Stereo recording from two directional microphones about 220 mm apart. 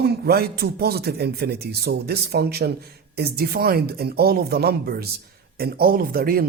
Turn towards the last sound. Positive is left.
turn(degrees=-45)  # may be behind; listen again after turning